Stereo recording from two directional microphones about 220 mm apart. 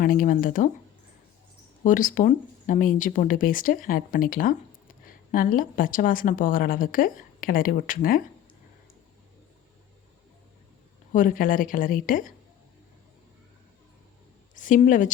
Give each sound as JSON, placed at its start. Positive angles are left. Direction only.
{"t": 0.0, "sound": "a woman's voice", "side_deg": 40}
{"t": 1.8, "sound": "a woman's voice", "side_deg": 35}
{"t": 11.1, "sound": "a woman's voice", "side_deg": 35}
{"t": 14.5, "sound": "a woman's voice", "side_deg": 35}